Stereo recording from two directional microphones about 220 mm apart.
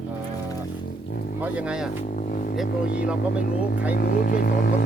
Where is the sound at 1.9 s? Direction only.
35° left (ahead or behind).